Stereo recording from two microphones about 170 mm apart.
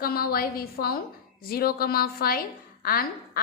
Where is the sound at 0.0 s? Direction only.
60° left (ahead or behind).